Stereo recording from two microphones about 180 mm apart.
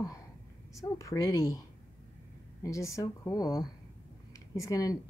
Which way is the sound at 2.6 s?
15° left (ahead or behind).